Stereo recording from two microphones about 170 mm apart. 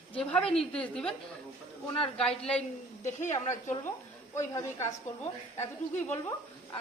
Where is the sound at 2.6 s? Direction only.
45° left (ahead or behind).